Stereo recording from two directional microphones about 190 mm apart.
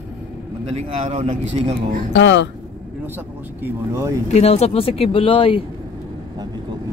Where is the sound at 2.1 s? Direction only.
65° left (ahead or behind).